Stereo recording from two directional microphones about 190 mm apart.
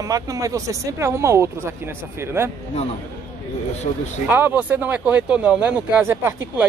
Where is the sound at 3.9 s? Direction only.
40° left (ahead or behind).